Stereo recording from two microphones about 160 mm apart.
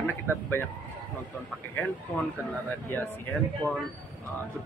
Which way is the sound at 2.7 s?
10° left (ahead or behind).